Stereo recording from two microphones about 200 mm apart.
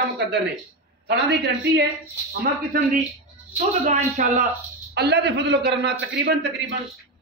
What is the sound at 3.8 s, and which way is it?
Speech, 35° right (ahead or behind).